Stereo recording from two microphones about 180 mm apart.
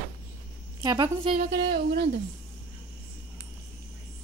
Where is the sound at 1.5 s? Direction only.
65° right (ahead or behind).